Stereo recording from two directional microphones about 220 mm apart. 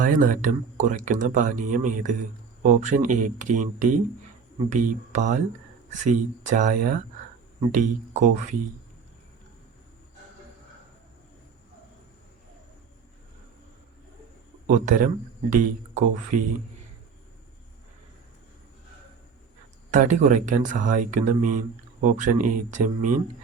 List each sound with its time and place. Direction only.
0.0 s speech: 35° right (ahead or behind)
14.7 s speech: 35° right (ahead or behind)
19.9 s speech: 35° right (ahead or behind)